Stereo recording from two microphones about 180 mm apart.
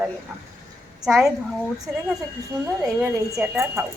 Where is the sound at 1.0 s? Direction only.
Centre (ahead or behind).